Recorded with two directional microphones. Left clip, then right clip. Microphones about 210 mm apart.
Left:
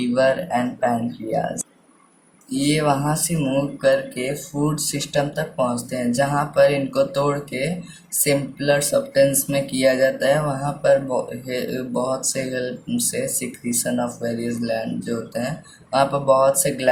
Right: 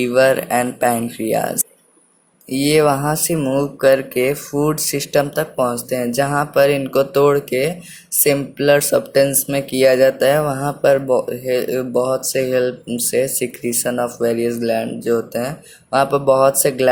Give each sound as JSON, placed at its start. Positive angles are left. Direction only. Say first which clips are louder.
{"t": 0.0, "sound": "speech", "louder": "right 5 dB", "side_deg": -30}
{"t": 2.5, "sound": "speech", "louder": "right 6 dB", "side_deg": -30}